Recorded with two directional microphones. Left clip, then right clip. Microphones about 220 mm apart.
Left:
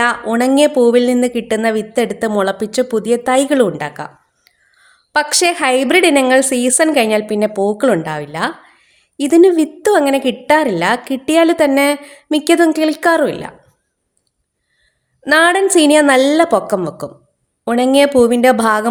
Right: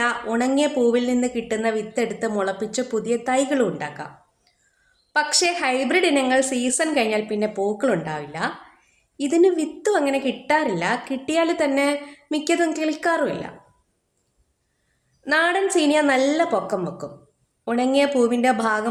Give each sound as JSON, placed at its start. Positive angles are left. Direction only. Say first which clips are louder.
{"t": 0.0, "sound": "a woman's voice", "louder": "left 8 dB", "side_deg": 45}
{"t": 15.2, "sound": "a woman's voice", "louder": "left 9 dB", "side_deg": 45}